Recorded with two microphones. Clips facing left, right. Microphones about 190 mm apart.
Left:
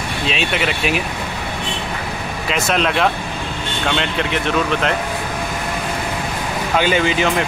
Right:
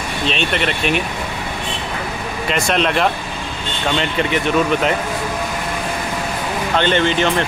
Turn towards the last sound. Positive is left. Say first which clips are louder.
# right 1 dB
turn(degrees=5)  # may be behind; listen again after turning